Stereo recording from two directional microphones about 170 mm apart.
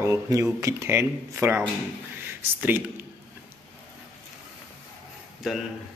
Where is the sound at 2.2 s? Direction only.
10° right (ahead or behind).